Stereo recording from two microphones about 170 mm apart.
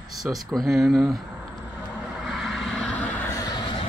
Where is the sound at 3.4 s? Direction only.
30° left (ahead or behind).